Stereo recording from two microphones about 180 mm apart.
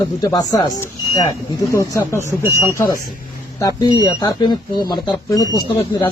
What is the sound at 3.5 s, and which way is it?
Speech, 20° left (ahead or behind).